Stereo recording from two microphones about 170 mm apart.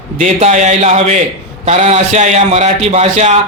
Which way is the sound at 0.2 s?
40° right (ahead or behind).